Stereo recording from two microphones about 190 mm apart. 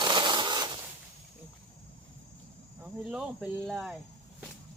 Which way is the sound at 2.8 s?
5° right (ahead or behind).